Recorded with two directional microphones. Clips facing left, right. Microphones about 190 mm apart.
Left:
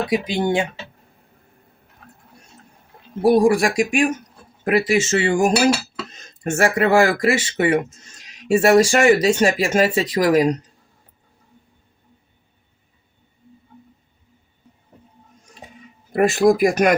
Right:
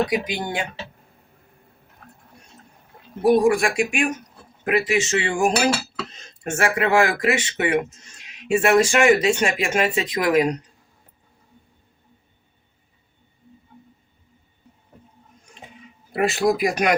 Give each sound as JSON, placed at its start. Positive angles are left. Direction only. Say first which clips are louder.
{"t": 0.1, "sound": "speech", "louder": "left 5 dB", "side_deg": 25}
{"t": 3.2, "sound": "speech", "louder": "left 2 dB", "side_deg": 35}
{"t": 16.1, "sound": "speech", "louder": "left 5 dB", "side_deg": 45}